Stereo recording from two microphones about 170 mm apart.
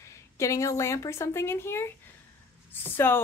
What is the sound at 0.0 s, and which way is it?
A woman's voice, 15° left (ahead or behind).